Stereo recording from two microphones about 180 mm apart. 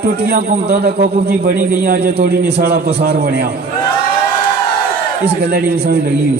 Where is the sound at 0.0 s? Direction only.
60° right (ahead or behind).